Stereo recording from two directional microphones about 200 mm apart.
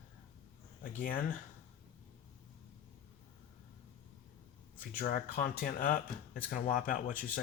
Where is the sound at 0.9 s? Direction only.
45° left (ahead or behind).